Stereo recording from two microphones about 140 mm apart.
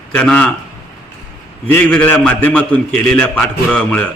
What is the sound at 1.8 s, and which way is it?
A man's voice, 10° left (ahead or behind).